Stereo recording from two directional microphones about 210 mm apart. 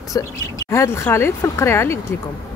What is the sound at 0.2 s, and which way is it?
Speech, 15° left (ahead or behind).